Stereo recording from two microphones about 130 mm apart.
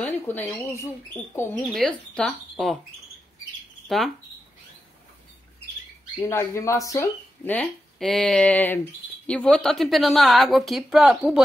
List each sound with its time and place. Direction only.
0.0 s speech: 15° left (ahead or behind)
1.7 s a woman's voice: 5° left (ahead or behind)
6.1 s speech: 20° left (ahead or behind)
7.4 s a woman's voice: 5° left (ahead or behind)